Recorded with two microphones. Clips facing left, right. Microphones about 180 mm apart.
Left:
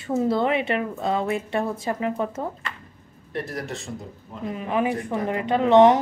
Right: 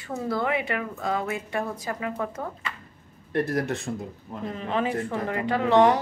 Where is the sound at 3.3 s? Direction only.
55° right (ahead or behind).